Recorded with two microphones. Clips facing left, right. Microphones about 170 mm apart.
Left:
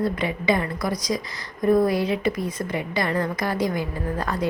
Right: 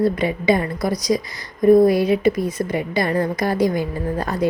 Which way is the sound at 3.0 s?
30° right (ahead or behind).